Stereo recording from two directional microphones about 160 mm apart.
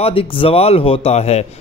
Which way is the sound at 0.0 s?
35° left (ahead or behind).